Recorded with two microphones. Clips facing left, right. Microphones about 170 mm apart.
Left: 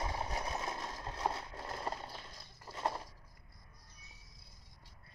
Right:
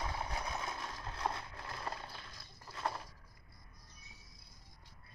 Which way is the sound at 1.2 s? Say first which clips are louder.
Left 2 dB; 25° left (ahead or behind).